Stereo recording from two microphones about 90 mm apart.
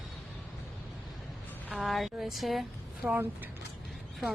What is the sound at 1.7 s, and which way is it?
Speech, centre (ahead or behind).